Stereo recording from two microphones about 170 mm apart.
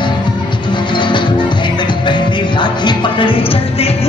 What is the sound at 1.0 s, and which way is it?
Music, 30° left (ahead or behind).